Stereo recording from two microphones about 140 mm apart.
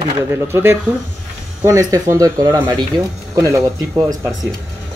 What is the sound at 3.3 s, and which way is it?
Speech, 20° right (ahead or behind).